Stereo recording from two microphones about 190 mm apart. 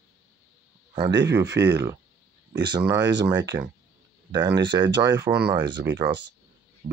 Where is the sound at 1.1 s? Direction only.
65° right (ahead or behind).